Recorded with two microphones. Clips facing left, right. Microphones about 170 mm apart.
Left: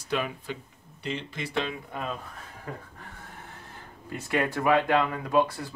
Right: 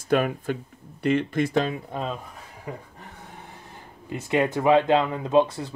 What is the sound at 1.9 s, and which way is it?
Speech, 25° right (ahead or behind).